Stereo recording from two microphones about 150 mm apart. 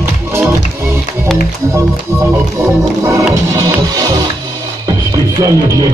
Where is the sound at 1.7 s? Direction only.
20° right (ahead or behind).